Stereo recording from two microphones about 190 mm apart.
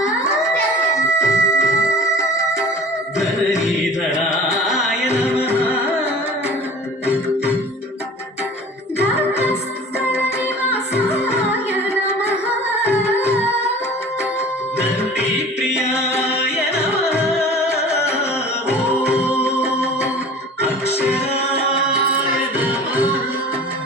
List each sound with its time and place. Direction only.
1.2 s music: 15° left (ahead or behind)
9.1 s music: 35° left (ahead or behind)
15.7 s music: 15° left (ahead or behind)
21.2 s music: 30° left (ahead or behind)
22.5 s music: 10° right (ahead or behind)